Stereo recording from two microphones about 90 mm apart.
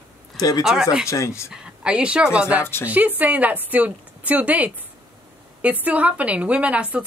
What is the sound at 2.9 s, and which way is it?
A woman's voice, 20° right (ahead or behind).